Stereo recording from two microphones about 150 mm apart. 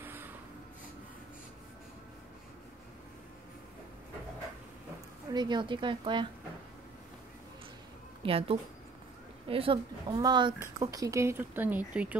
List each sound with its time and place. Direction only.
0.0 s a sound: 15° right (ahead or behind)
5.3 s speech: 30° right (ahead or behind)
8.2 s speech: 40° right (ahead or behind); by 12.2 s 10° right (ahead or behind)